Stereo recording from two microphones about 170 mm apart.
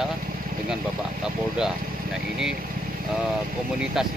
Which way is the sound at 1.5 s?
5° right (ahead or behind).